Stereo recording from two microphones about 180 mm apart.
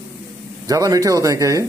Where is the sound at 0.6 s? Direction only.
20° right (ahead or behind).